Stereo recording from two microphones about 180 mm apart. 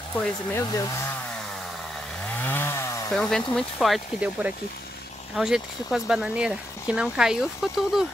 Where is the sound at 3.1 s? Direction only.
5° left (ahead or behind).